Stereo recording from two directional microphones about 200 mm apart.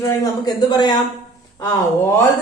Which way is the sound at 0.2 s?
20° left (ahead or behind).